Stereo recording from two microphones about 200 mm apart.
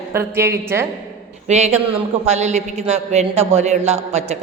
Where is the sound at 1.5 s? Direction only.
35° right (ahead or behind).